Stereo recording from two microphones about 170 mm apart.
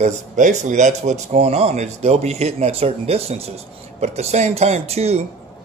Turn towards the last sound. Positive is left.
turn(degrees=-35)  # may be behind; listen again after turning